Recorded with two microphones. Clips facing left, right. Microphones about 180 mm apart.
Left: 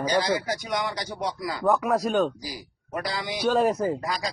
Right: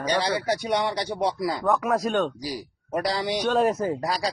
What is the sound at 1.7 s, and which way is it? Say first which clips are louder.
Speech: left 2 dB; centre (ahead or behind).